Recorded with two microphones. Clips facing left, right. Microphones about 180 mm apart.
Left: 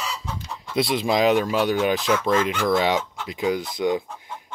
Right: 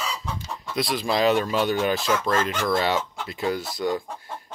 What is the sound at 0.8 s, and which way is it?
Speech, 25° left (ahead or behind).